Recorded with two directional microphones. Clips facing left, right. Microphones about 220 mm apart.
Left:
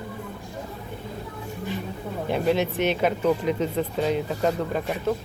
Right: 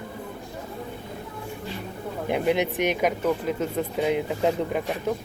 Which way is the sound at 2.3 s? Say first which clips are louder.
Even; 15° right (ahead or behind).